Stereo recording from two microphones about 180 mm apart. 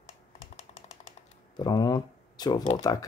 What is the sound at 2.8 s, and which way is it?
Speech, 20° left (ahead or behind).